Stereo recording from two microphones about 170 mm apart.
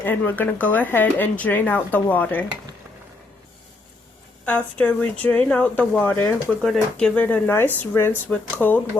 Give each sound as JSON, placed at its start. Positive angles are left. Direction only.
{"t": 0.0, "sound": "speech", "side_deg": 10}
{"t": 4.4, "sound": "speech", "side_deg": 10}